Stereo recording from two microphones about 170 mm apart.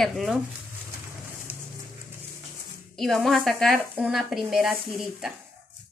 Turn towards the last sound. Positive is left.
turn(degrees=0)  # may be behind; listen again after turning